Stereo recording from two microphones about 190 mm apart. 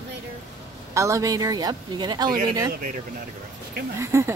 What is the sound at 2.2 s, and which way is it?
Speech, 45° right (ahead or behind).